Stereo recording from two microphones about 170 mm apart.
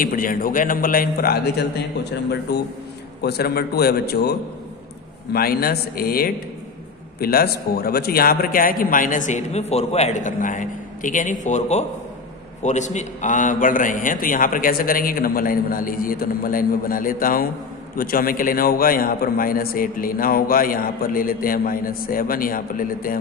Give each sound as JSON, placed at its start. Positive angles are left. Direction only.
{"t": 0.0, "sound": "a man's voice", "side_deg": 55}